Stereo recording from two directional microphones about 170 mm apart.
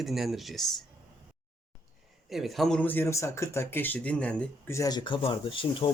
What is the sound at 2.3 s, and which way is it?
Speech, centre (ahead or behind).